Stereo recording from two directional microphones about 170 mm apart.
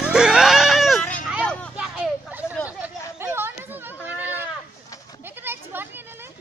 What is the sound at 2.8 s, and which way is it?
Chatter, 15° right (ahead or behind).